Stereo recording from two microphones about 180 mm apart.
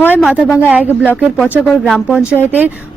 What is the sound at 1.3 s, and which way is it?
A woman's voice, 5° left (ahead or behind).